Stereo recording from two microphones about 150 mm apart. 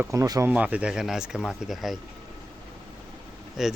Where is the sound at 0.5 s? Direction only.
10° right (ahead or behind).